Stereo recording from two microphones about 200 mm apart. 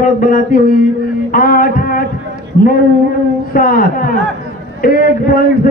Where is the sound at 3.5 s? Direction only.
45° left (ahead or behind).